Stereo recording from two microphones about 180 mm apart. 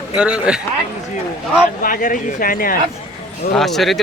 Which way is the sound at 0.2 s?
5° right (ahead or behind).